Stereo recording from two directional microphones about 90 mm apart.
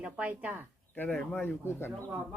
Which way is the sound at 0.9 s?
15° left (ahead or behind).